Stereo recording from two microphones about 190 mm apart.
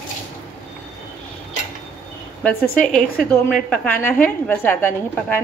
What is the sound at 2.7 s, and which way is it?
A woman's voice, 5° left (ahead or behind).